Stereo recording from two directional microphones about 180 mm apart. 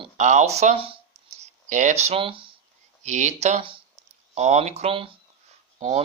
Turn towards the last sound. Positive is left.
turn(degrees=-35)  # may be behind; listen again after turning